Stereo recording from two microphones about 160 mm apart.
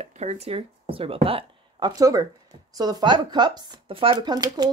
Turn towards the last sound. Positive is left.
turn(degrees=-25)  # may be behind; listen again after turning